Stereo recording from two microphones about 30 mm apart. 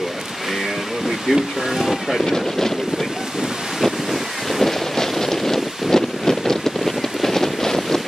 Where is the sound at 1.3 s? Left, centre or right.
Centre.